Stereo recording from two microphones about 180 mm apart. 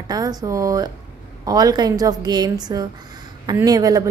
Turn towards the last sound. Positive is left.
turn(degrees=-20)  # may be behind; listen again after turning